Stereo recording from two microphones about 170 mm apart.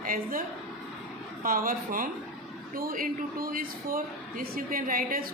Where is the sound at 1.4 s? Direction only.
55° right (ahead or behind).